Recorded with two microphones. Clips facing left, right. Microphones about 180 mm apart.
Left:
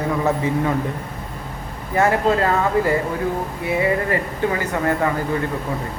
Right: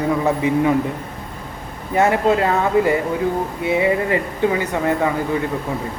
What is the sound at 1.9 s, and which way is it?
Speech, 20° right (ahead or behind).